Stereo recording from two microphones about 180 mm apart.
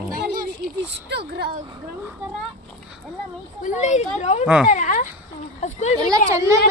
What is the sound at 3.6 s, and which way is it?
Speech, 40° left (ahead or behind).